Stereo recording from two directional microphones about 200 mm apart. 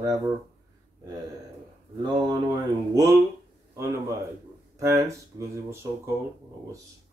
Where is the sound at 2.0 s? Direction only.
20° right (ahead or behind).